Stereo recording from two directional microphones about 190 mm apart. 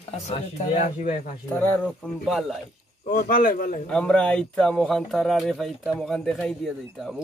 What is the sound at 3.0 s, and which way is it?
Speech, 50° left (ahead or behind).